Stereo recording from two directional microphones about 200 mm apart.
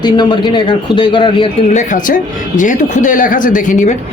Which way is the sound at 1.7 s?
40° left (ahead or behind).